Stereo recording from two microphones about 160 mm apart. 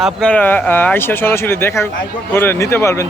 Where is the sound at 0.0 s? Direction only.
5° left (ahead or behind).